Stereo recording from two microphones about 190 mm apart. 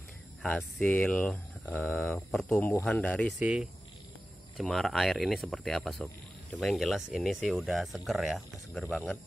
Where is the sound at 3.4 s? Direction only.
5° right (ahead or behind).